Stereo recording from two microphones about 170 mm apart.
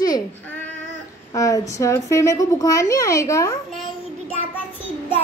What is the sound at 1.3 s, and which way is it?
A child's voice, 20° left (ahead or behind).